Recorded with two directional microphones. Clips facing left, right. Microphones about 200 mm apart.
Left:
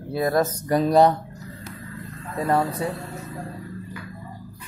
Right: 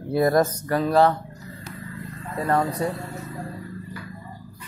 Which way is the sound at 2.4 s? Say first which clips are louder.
Even; 10° left (ahead or behind).